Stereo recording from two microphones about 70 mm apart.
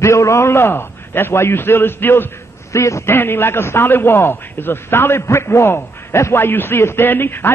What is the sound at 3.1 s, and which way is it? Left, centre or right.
A man's voice, left.